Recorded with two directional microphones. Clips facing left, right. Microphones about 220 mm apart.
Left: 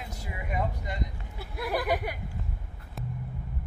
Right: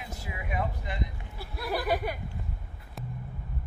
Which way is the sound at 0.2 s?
5° right (ahead or behind).